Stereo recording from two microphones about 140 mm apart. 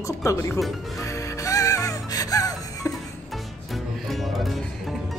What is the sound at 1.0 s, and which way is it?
Music, 20° left (ahead or behind).